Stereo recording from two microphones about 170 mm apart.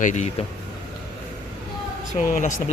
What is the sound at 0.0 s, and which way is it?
Speech, 45° left (ahead or behind).